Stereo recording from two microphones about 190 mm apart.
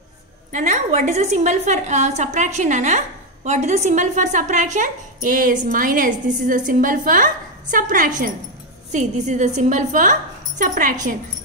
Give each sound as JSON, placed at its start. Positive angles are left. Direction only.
{"t": 0.5, "sound": "a woman's voice", "side_deg": -40}